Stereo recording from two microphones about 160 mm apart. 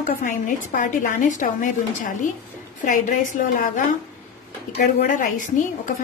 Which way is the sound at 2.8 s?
55° left (ahead or behind).